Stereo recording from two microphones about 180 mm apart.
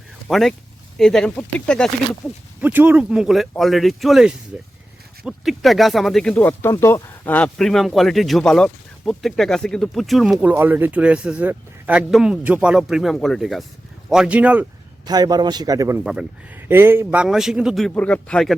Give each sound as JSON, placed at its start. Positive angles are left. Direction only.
{"t": 0.3, "sound": "speech", "side_deg": 0}
{"t": 2.6, "sound": "speech", "side_deg": -10}
{"t": 15.0, "sound": "a man's voice", "side_deg": -20}
{"t": 16.0, "sound": "speech", "side_deg": -5}